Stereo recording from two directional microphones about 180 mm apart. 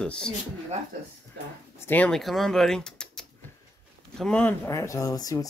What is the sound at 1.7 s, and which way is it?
Speech, 10° left (ahead or behind).